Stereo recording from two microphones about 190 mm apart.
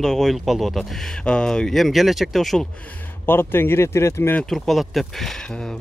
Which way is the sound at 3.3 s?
10° left (ahead or behind).